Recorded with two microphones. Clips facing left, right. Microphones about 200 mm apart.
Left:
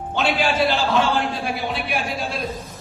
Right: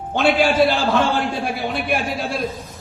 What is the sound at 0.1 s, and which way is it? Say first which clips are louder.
A man's voice: right 5 dB; 50° right (ahead or behind).